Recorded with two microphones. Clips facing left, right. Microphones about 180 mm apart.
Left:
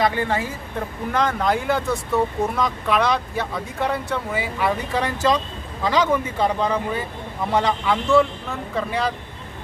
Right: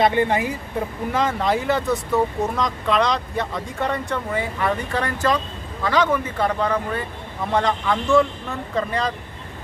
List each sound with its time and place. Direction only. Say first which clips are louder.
0.0 s speech: right 3 dB; 20° right (ahead or behind)
1.1 s speech: even; centre (ahead or behind)